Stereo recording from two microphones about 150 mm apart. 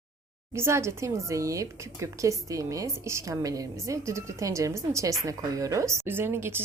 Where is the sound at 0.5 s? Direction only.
15° right (ahead or behind).